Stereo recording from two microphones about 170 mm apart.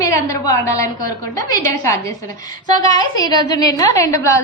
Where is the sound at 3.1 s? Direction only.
25° left (ahead or behind).